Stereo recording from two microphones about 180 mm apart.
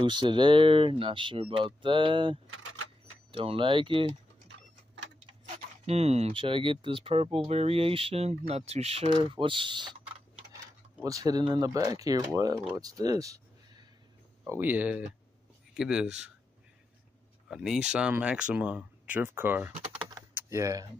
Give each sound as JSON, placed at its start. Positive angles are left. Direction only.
{"t": 0.0, "sound": "speech", "side_deg": -25}
{"t": 5.9, "sound": "speech", "side_deg": -35}
{"t": 11.1, "sound": "speech", "side_deg": -20}
{"t": 17.5, "sound": "speech", "side_deg": -5}
{"t": 19.7, "sound": "typing", "side_deg": -25}
{"t": 20.3, "sound": "speech", "side_deg": -15}